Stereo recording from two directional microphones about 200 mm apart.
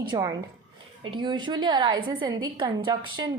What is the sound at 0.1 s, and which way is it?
A woman's voice, 20° right (ahead or behind).